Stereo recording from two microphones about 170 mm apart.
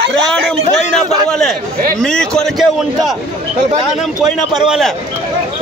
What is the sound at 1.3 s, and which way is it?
A man's voice, 5° left (ahead or behind).